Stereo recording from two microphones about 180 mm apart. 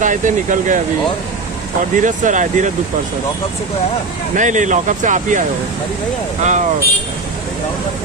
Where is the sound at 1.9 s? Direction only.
45° right (ahead or behind).